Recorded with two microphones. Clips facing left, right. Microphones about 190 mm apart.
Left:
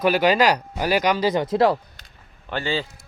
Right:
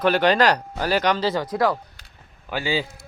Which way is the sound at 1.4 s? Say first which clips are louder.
Left 6 dB; 25° left (ahead or behind).